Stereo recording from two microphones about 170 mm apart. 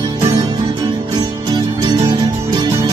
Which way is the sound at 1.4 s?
25° right (ahead or behind).